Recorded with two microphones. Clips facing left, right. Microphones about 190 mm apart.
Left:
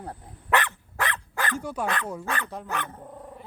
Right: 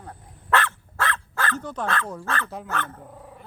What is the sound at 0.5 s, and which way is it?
Dog, 15° left (ahead or behind).